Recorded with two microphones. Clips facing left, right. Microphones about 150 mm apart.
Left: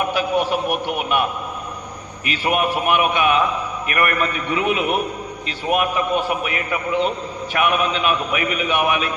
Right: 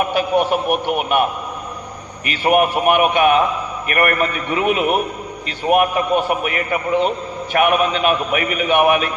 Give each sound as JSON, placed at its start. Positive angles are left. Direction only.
{"t": 0.1, "sound": "a man's voice", "side_deg": -50}
{"t": 2.2, "sound": "a man's voice", "side_deg": -50}